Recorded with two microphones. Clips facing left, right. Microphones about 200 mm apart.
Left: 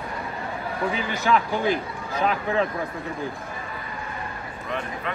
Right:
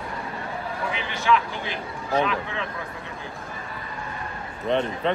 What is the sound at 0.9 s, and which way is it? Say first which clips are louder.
A man's voice: right 1 dB; 40° left (ahead or behind).